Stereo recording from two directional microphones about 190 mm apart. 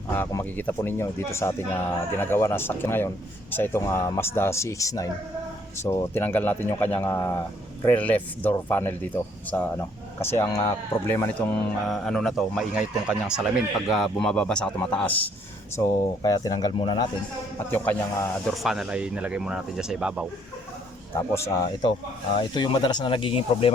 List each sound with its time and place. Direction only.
0.1 s speech: 15° left (ahead or behind)
15.8 s speech: 15° left (ahead or behind)
17.7 s speech: 10° left (ahead or behind)
18.6 s speech: centre (ahead or behind)
21.5 s speech: 20° left (ahead or behind)